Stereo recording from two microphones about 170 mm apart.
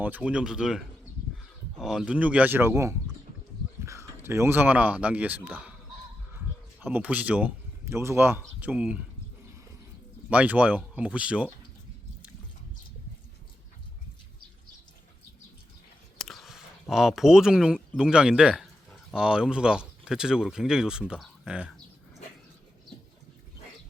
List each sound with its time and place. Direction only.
0.0 s speech: 10° right (ahead or behind)
1.8 s speech: centre (ahead or behind)
6.8 s speech: 10° right (ahead or behind)
10.2 s speech: 10° right (ahead or behind)
16.1 s speech: centre (ahead or behind)